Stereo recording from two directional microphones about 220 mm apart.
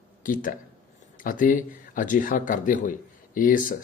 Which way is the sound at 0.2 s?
40° left (ahead or behind).